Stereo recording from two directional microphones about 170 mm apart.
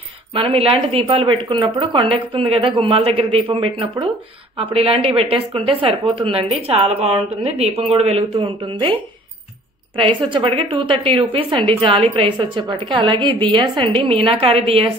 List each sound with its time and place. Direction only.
0.3 s a woman's voice: 30° right (ahead or behind)
9.9 s a woman's voice: 30° right (ahead or behind)